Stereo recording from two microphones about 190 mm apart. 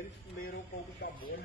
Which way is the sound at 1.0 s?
55° left (ahead or behind).